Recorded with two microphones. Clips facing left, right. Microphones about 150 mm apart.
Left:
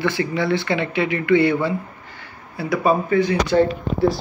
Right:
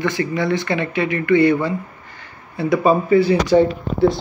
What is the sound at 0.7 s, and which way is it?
Speech, 15° left (ahead or behind).